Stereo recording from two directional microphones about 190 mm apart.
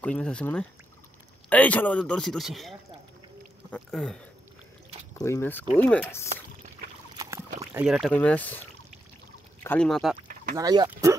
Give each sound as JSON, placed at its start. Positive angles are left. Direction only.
{"t": 0.0, "sound": "speech", "side_deg": 5}
{"t": 5.1, "sound": "speech", "side_deg": 15}
{"t": 7.2, "sound": "a sound", "side_deg": -15}
{"t": 7.7, "sound": "speech", "side_deg": -5}
{"t": 8.1, "sound": "speech", "side_deg": 5}
{"t": 9.6, "sound": "speech", "side_deg": 10}
{"t": 10.5, "sound": "speech", "side_deg": -20}